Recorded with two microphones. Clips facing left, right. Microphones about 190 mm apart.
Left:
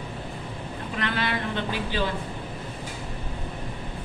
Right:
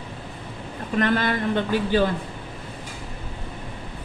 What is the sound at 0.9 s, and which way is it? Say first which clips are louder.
A man's voice: right 7 dB; 45° right (ahead or behind).